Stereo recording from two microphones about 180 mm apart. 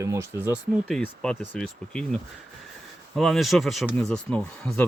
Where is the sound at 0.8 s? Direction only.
5° left (ahead or behind).